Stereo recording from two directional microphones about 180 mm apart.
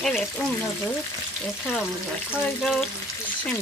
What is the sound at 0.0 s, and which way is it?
Speech, centre (ahead or behind).